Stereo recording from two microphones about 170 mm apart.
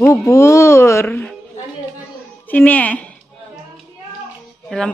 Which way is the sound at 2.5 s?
10° left (ahead or behind).